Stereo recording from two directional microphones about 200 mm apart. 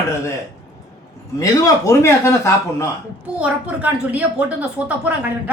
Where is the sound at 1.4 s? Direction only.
15° left (ahead or behind).